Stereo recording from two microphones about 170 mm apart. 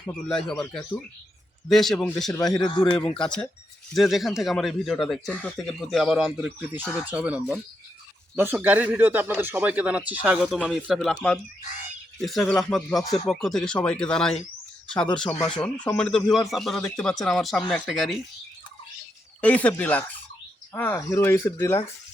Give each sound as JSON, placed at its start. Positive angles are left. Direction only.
{"t": 0.0, "sound": "speech", "side_deg": 5}
{"t": 2.3, "sound": "speech", "side_deg": 20}
{"t": 3.2, "sound": "speech", "side_deg": 5}
{"t": 19.4, "sound": "speech", "side_deg": 10}